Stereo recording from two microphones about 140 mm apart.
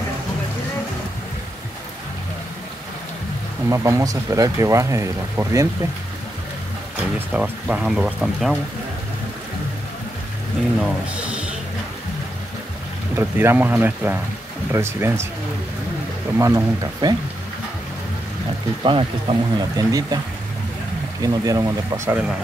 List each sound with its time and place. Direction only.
3.6 s speech: 20° right (ahead or behind)
7.0 s speech: 10° right (ahead or behind)
11.1 s music: 10° right (ahead or behind)
13.1 s speech: 15° right (ahead or behind)
16.3 s speech: 20° right (ahead or behind)
18.9 s speech: 40° right (ahead or behind)
19.8 s speech: 25° right (ahead or behind)
21.2 s speech: 25° right (ahead or behind)